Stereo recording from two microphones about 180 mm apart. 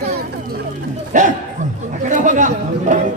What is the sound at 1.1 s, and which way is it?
Speech, 45° right (ahead or behind).